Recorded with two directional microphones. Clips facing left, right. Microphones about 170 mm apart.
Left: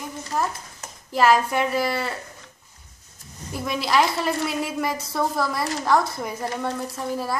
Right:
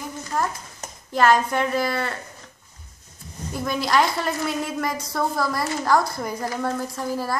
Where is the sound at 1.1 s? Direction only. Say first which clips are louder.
Even; 5° left (ahead or behind).